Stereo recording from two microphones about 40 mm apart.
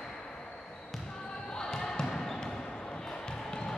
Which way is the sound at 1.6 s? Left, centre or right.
Centre.